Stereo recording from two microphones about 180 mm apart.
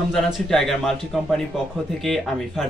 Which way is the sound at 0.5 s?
Centre (ahead or behind).